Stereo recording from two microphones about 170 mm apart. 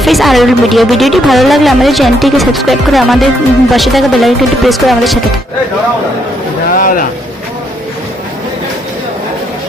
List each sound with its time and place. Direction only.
0.0 s speech: centre (ahead or behind)
6.7 s speech: 55° left (ahead or behind)